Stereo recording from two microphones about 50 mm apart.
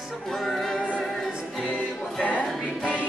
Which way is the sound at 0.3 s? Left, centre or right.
Centre.